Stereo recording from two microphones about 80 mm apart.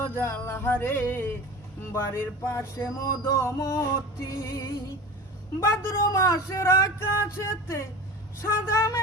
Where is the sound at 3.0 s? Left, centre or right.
Left.